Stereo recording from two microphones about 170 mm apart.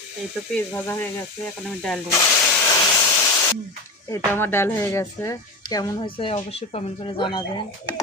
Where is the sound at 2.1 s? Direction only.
15° left (ahead or behind).